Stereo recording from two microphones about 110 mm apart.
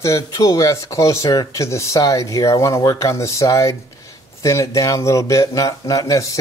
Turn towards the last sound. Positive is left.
turn(degrees=30)  # may be behind; listen again after turning